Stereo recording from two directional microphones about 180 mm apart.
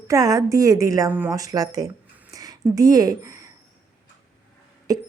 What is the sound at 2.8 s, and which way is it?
Speech, 20° right (ahead or behind).